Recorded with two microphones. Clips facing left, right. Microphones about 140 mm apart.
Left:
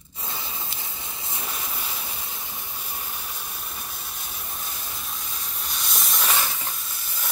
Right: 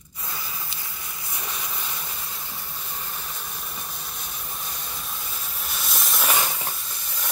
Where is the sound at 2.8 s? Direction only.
10° left (ahead or behind).